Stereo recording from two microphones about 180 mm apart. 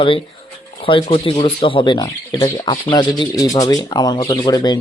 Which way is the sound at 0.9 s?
30° left (ahead or behind).